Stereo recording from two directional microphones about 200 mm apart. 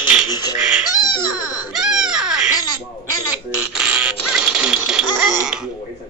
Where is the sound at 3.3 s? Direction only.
5° right (ahead or behind).